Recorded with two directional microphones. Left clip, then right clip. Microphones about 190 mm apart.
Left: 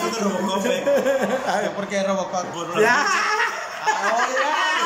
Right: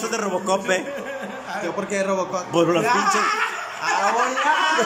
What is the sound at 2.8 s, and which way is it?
Speech, 35° left (ahead or behind).